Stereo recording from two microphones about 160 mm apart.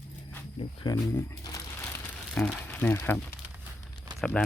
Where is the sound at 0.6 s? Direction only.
30° left (ahead or behind).